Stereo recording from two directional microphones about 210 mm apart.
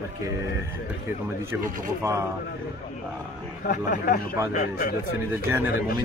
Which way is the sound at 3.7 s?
40° left (ahead or behind).